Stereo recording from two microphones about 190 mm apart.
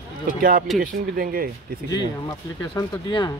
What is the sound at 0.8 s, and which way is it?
Speech, 50° right (ahead or behind).